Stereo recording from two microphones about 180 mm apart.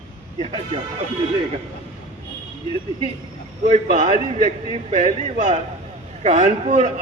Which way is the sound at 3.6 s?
45° right (ahead or behind).